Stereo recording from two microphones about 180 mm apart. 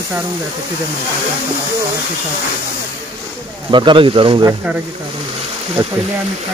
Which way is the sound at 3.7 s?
25° right (ahead or behind).